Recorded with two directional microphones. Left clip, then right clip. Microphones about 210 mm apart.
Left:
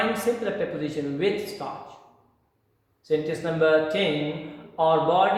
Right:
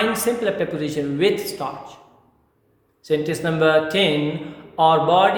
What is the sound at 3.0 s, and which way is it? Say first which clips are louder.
Speech: right 4 dB; 45° right (ahead or behind).